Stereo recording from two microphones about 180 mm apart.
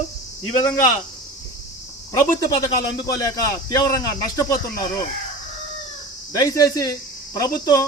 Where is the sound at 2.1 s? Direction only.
20° left (ahead or behind).